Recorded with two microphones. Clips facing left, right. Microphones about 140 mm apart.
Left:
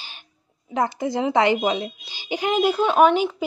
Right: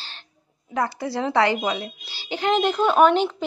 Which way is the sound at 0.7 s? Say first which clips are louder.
Left 2 dB; 20° left (ahead or behind).